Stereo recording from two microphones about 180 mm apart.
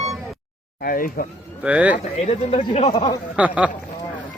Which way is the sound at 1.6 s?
10° right (ahead or behind).